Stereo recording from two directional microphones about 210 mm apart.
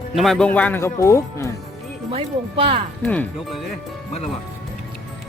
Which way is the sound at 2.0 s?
25° right (ahead or behind).